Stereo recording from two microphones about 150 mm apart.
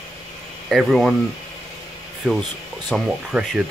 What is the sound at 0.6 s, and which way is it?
Speech, centre (ahead or behind).